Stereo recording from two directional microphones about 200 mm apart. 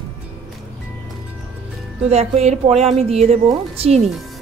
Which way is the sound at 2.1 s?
30° right (ahead or behind).